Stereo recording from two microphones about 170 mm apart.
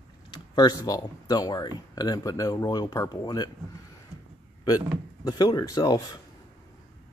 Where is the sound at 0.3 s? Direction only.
25° left (ahead or behind).